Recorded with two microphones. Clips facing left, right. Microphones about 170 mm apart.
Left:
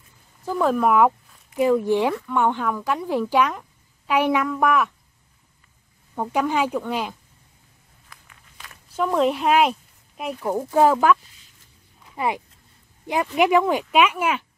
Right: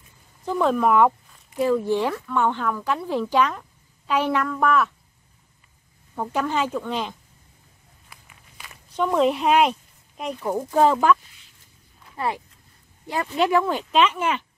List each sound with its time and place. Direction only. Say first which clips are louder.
0.5 s speech: even; 5° left (ahead or behind)
6.1 s speech: left 2 dB; 10° left (ahead or behind)
8.1 s walk: even; 10° right (ahead or behind)
8.9 s speech: even; centre (ahead or behind)
12.2 s speech: left 2 dB; 15° left (ahead or behind)